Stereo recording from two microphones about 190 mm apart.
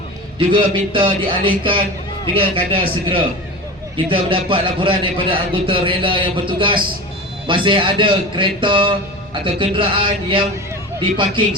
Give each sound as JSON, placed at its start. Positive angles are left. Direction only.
{"t": 0.3, "sound": "a man's voice", "side_deg": -25}